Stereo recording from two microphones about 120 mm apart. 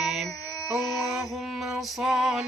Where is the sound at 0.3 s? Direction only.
30° left (ahead or behind).